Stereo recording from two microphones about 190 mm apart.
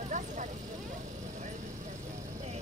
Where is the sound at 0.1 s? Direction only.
40° right (ahead or behind).